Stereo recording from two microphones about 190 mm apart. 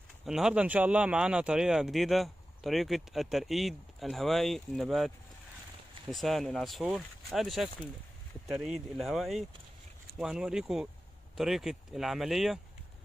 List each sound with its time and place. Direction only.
0.2 s speech: 5° right (ahead or behind)